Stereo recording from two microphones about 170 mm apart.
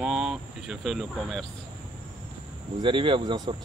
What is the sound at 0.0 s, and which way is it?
Cricket, 5° right (ahead or behind).